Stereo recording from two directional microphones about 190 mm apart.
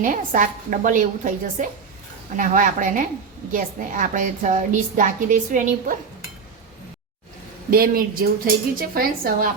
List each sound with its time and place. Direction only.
0.0 s a woman's voice: 45° right (ahead or behind)
7.7 s a woman's voice: 50° right (ahead or behind)